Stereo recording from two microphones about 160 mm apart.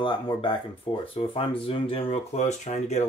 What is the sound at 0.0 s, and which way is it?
Speech, 30° left (ahead or behind).